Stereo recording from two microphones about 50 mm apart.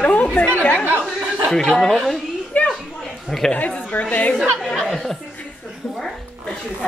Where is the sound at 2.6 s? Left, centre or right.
Left.